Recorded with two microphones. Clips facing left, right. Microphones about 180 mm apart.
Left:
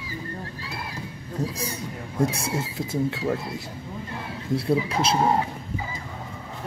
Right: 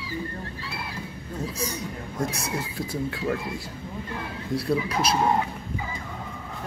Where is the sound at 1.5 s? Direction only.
30° left (ahead or behind).